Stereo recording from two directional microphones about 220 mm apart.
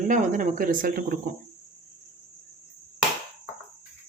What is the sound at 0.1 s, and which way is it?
Speech, 35° right (ahead or behind).